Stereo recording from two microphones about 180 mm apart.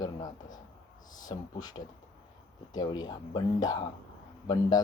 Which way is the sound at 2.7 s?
25° left (ahead or behind).